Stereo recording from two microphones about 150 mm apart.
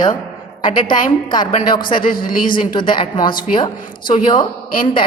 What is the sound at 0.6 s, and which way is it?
A woman's voice, 30° left (ahead or behind).